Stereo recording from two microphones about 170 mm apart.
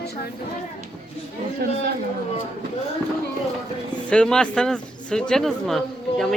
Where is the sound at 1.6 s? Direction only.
70° right (ahead or behind).